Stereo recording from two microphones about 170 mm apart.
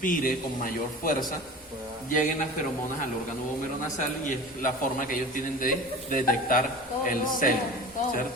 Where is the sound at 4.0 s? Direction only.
50° left (ahead or behind).